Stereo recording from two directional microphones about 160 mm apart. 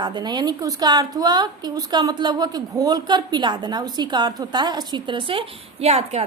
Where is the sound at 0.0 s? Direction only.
25° right (ahead or behind).